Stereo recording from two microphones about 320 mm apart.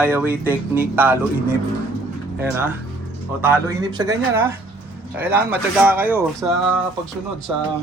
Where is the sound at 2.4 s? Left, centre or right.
Centre.